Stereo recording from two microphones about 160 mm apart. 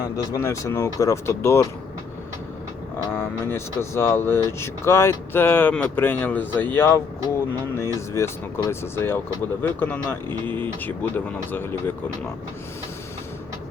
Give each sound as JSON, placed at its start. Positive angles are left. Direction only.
{"t": 0.3, "sound": "speech", "side_deg": 20}
{"t": 3.1, "sound": "speech", "side_deg": 15}
{"t": 7.9, "sound": "speech", "side_deg": 15}